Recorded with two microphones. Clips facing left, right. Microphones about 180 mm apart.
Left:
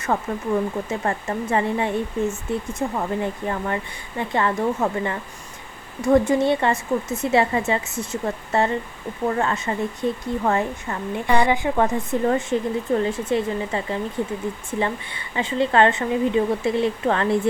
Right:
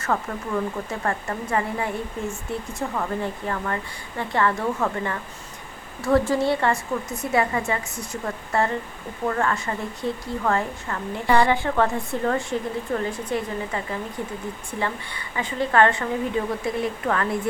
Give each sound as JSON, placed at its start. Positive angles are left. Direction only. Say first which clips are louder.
{"t": 0.0, "sound": "a woman's voice", "louder": "left 2 dB", "side_deg": 20}